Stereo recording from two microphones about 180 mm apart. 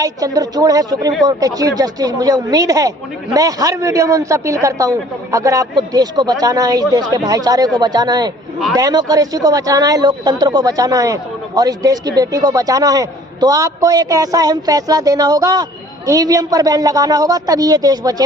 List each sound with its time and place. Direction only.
0.0 s a man's voice: 20° right (ahead or behind)